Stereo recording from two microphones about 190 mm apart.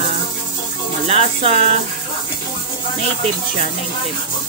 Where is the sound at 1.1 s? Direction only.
30° right (ahead or behind).